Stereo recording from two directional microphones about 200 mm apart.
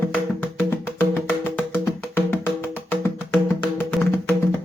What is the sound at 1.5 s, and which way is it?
Music, 10° left (ahead or behind).